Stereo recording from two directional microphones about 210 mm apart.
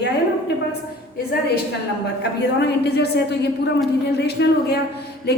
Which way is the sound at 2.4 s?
50° left (ahead or behind).